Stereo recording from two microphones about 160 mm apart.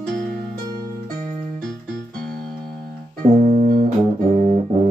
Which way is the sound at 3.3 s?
50° right (ahead or behind).